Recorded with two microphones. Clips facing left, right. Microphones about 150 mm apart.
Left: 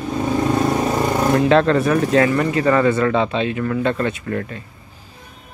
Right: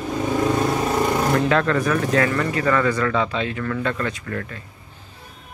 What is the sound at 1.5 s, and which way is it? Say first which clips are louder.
Speech: left 5 dB; 25° left (ahead or behind).